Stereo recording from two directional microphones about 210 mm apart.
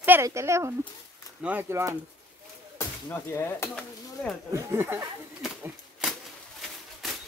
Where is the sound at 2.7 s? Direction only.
10° left (ahead or behind).